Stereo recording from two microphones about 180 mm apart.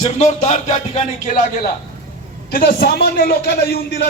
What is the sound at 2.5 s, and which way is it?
Speech, 60° left (ahead or behind).